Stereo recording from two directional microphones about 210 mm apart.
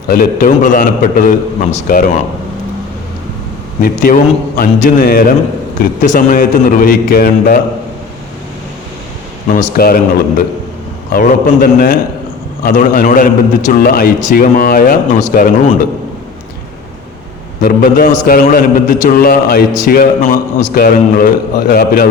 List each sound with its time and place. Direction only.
0.1 s a man's voice: 40° left (ahead or behind)
3.8 s a man's voice: 45° left (ahead or behind)
9.5 s a man's voice: 40° left (ahead or behind)
17.6 s a man's voice: 45° left (ahead or behind)